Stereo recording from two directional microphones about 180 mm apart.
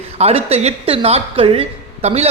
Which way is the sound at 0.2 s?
35° right (ahead or behind).